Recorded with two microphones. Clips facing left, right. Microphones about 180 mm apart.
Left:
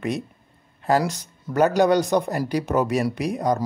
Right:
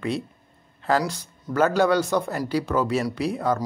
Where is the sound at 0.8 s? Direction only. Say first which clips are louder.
Left 2 dB; 20° left (ahead or behind).